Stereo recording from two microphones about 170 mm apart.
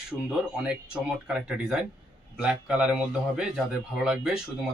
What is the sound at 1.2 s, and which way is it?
Speech, 5° right (ahead or behind).